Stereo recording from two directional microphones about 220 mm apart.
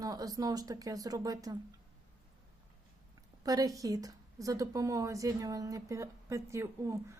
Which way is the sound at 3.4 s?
15° right (ahead or behind).